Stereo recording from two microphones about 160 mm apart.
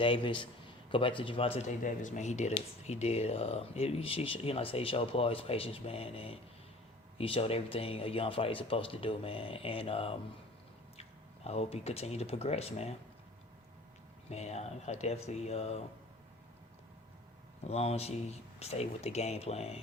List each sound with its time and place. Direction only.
0.0 s speech: 30° left (ahead or behind)
11.4 s speech: 40° left (ahead or behind)
14.3 s speech: 40° left (ahead or behind)
17.6 s speech: 40° left (ahead or behind)